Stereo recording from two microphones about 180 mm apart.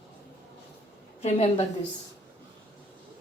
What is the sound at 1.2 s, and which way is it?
Speech, 35° left (ahead or behind).